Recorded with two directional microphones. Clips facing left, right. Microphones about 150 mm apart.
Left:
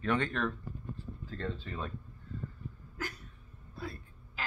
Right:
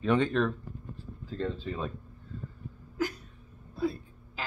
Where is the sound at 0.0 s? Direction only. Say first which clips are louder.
Right 6 dB; 20° right (ahead or behind).